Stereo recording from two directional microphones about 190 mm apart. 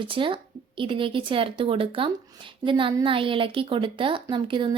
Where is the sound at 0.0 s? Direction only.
25° right (ahead or behind).